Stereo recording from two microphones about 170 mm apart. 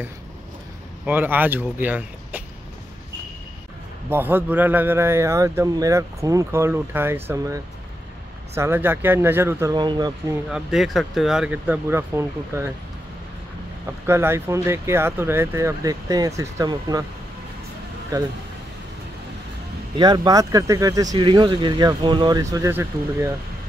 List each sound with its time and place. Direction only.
1.0 s speech: 10° right (ahead or behind)
4.1 s a man's voice: 10° right (ahead or behind)
10.5 s speech: centre (ahead or behind)
14.0 s a man's voice: 15° right (ahead or behind)
18.1 s speech: 20° right (ahead or behind)
20.0 s speech: 25° right (ahead or behind)